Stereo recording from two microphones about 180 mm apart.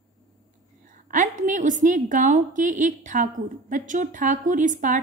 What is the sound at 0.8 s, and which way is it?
A woman's voice, 45° right (ahead or behind).